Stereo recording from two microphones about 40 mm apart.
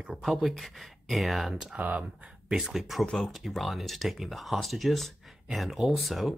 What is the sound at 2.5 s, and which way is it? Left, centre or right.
Speech, centre.